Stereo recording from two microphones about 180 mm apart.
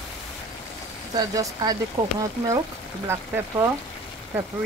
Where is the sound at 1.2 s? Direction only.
20° right (ahead or behind).